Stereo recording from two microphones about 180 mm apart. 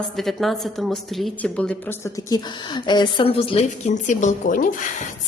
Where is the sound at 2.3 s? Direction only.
25° left (ahead or behind).